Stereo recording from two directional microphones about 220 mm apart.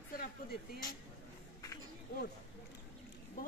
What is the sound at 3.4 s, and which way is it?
Speech, 40° left (ahead or behind).